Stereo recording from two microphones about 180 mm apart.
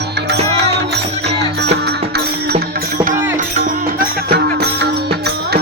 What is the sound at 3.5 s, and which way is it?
Music, 50° right (ahead or behind).